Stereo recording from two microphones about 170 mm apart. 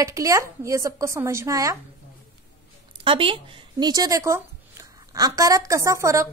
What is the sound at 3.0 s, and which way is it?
A woman's voice, 30° right (ahead or behind).